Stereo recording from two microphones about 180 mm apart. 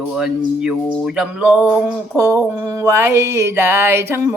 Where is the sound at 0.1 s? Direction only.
5° right (ahead or behind).